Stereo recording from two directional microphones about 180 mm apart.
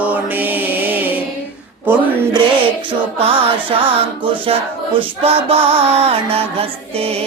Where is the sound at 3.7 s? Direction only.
30° right (ahead or behind).